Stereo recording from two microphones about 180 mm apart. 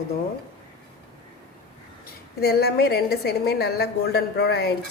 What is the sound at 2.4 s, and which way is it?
A woman's voice, 60° left (ahead or behind).